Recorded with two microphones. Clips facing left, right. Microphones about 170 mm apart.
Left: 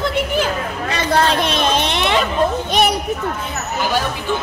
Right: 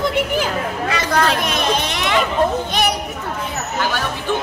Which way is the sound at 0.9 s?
30° left (ahead or behind).